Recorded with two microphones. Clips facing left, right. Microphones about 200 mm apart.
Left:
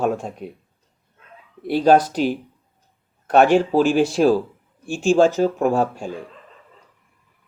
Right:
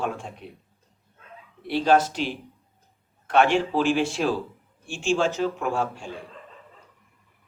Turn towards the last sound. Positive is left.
turn(degrees=40)  # may be behind; listen again after turning